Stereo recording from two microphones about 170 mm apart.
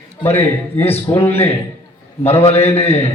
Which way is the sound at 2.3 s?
35° left (ahead or behind).